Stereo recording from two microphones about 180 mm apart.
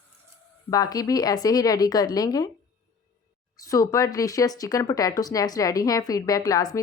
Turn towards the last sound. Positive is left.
turn(degrees=20)  # may be behind; listen again after turning